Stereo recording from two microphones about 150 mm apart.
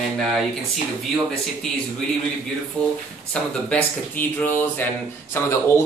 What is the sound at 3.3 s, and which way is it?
Speech, 10° left (ahead or behind).